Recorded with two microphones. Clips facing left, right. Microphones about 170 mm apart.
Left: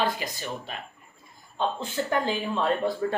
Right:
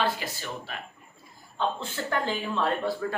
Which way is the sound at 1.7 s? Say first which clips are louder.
Left 3 dB; 15° left (ahead or behind).